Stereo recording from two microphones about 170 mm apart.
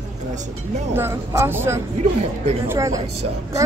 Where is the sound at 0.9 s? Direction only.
15° right (ahead or behind).